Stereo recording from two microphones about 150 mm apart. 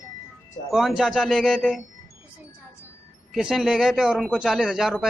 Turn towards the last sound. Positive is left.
turn(degrees=-5)  # may be behind; listen again after turning